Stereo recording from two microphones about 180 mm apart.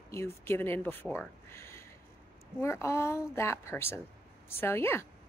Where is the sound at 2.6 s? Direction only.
15° left (ahead or behind).